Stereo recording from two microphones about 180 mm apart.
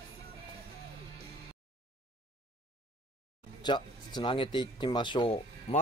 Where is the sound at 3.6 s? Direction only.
25° left (ahead or behind).